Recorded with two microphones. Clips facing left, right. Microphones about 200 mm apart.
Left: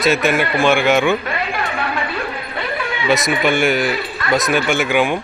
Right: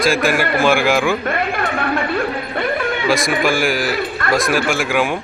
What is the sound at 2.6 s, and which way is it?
Dog, 50° right (ahead or behind).